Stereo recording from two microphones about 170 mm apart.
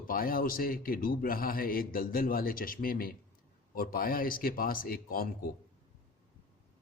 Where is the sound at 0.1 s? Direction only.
60° left (ahead or behind).